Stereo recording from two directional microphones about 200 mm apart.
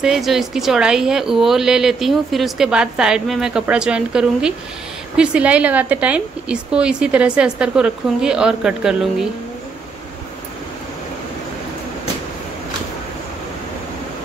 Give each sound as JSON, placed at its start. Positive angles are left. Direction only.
{"t": 0.0, "sound": "a woman's voice", "side_deg": 0}